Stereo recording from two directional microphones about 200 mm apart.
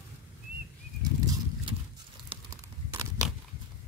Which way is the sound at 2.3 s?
25° right (ahead or behind).